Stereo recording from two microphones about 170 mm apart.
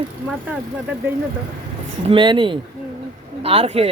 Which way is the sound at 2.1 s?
30° right (ahead or behind).